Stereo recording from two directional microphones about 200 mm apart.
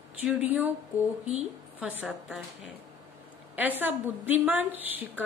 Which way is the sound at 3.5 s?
10° right (ahead or behind).